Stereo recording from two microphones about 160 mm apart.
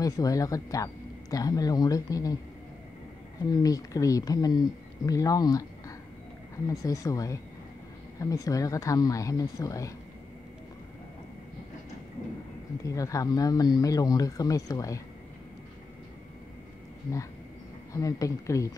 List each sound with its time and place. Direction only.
0.0 s speech: 20° left (ahead or behind)
3.4 s speech: 20° left (ahead or behind)
12.8 s speech: 20° left (ahead or behind)
17.9 s speech: 20° left (ahead or behind)